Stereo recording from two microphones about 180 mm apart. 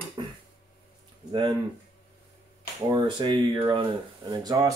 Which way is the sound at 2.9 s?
25° right (ahead or behind).